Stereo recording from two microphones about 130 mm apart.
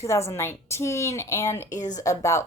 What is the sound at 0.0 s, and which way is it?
Speech, 20° left (ahead or behind).